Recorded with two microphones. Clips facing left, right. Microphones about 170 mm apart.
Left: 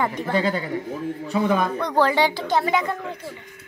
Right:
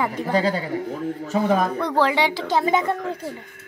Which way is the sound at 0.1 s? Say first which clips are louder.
Right 1 dB; 35° right (ahead or behind).